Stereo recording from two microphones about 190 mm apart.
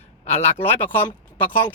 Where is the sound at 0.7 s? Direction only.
10° left (ahead or behind).